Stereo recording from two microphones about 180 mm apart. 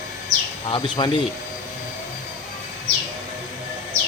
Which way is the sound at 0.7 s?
30° left (ahead or behind).